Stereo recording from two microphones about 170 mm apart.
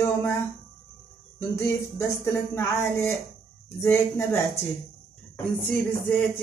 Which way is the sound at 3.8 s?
15° left (ahead or behind).